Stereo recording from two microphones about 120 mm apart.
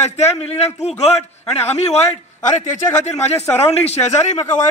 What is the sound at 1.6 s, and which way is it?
Speech, 60° left (ahead or behind).